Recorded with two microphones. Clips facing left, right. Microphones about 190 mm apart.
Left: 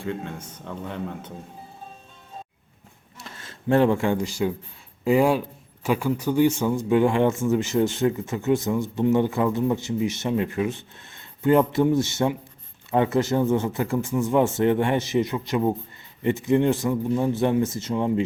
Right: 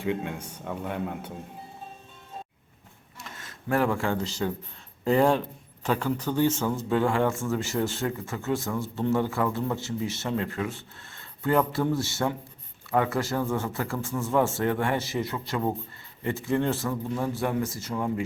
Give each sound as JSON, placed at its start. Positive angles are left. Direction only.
{"t": 0.0, "sound": "a man's voice", "side_deg": -15}
{"t": 3.2, "sound": "a man's voice", "side_deg": 35}